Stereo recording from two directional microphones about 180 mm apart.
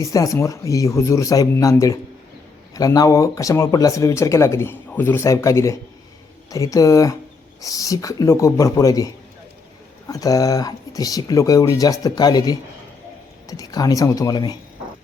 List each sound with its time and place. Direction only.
0.0 s speech: 20° left (ahead or behind)
10.1 s speech: 20° left (ahead or behind)